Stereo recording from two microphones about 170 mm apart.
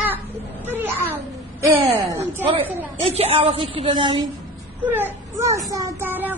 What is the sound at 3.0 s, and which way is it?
A woman's voice, 35° right (ahead or behind).